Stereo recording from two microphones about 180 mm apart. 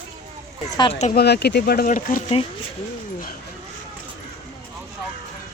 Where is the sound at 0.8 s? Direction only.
35° left (ahead or behind).